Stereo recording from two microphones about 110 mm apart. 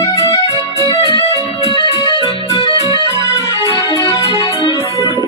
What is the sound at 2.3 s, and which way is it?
Music, 55° left (ahead or behind).